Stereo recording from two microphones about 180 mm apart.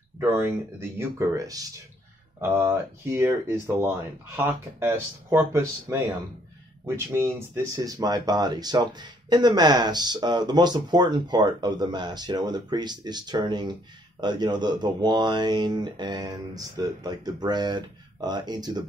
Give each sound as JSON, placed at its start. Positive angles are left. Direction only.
{"t": 0.2, "sound": "speech", "side_deg": -15}
{"t": 7.1, "sound": "speech", "side_deg": -15}